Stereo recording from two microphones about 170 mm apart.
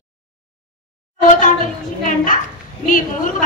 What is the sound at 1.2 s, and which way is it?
Speech, 50° left (ahead or behind).